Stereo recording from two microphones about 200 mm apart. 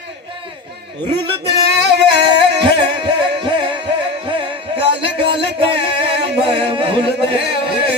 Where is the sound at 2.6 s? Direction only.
25° right (ahead or behind).